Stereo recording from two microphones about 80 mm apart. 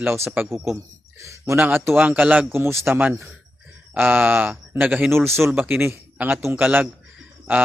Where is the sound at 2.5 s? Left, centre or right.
Right.